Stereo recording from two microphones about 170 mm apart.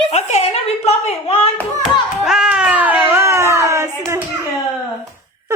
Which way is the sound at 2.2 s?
5° right (ahead or behind).